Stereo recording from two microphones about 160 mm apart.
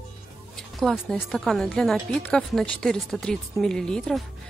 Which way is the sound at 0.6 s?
Centre (ahead or behind).